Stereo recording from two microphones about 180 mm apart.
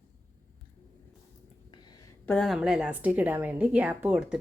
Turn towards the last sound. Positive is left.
turn(degrees=-5)  # may be behind; listen again after turning